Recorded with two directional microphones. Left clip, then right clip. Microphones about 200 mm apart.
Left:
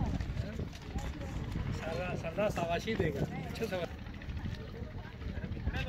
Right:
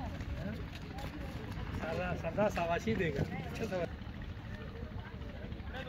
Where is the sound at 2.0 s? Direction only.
35° right (ahead or behind).